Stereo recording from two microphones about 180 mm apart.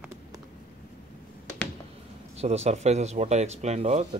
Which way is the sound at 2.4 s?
35° right (ahead or behind).